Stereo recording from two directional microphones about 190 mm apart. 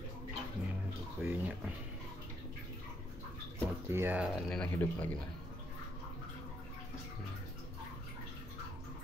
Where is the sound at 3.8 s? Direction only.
10° right (ahead or behind).